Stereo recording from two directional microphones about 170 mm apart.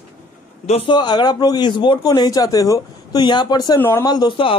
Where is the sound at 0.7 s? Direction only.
25° left (ahead or behind).